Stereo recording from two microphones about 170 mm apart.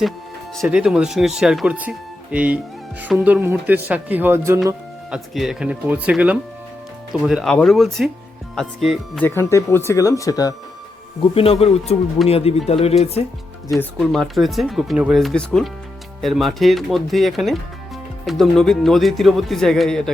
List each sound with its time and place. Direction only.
0.5 s speech: centre (ahead or behind)
5.1 s speech: centre (ahead or behind)
9.2 s speech: 15° left (ahead or behind)
11.3 s speech: 35° left (ahead or behind)
14.1 s speech: centre (ahead or behind)